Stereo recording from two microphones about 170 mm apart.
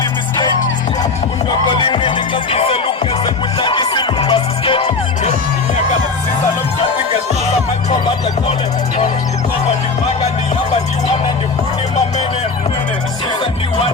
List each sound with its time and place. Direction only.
1.5 s music: 30° left (ahead or behind)
7.9 s music: 25° left (ahead or behind)